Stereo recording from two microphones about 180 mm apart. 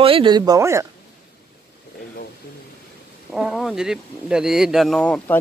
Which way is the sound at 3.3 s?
Centre (ahead or behind).